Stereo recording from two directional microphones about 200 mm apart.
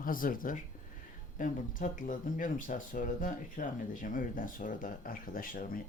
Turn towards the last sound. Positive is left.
turn(degrees=45)  # may be behind; listen again after turning